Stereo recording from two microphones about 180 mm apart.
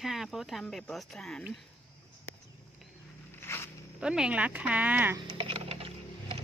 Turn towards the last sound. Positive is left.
turn(degrees=-30)  # may be behind; listen again after turning